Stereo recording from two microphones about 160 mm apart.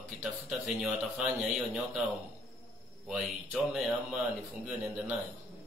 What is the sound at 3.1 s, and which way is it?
Speech, centre (ahead or behind).